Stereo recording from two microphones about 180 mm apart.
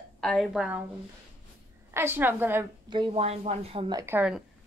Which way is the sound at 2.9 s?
30° right (ahead or behind).